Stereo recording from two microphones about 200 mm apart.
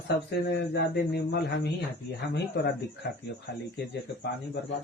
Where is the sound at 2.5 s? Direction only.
55° left (ahead or behind).